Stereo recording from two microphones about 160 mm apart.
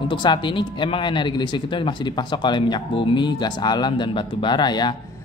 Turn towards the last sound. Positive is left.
turn(degrees=25)  # may be behind; listen again after turning